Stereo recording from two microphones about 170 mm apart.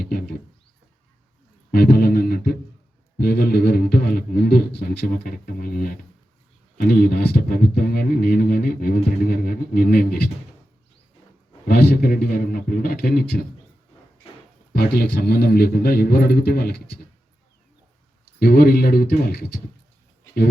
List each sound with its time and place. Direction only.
0.0 s a sound: 65° left (ahead or behind)
1.7 s music: 65° left (ahead or behind)
3.2 s a sound: 65° left (ahead or behind)
6.7 s speech: 65° left (ahead or behind)
11.7 s speech: 65° left (ahead or behind)
14.8 s speech: 65° left (ahead or behind)
18.3 s speech: 65° left (ahead or behind)